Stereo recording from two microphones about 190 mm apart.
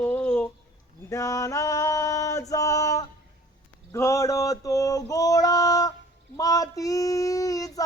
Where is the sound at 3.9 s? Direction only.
15° left (ahead or behind).